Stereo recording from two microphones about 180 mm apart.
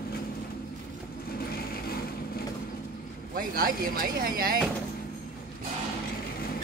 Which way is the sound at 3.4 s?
50° right (ahead or behind).